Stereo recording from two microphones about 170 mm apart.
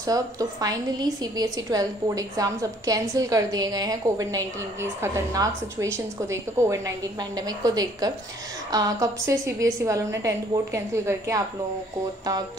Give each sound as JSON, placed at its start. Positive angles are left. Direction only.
{"t": 0.0, "sound": "a woman's voice", "side_deg": -20}